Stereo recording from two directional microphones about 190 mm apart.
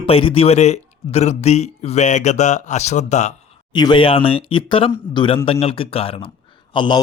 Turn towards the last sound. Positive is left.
turn(degrees=25)  # may be behind; listen again after turning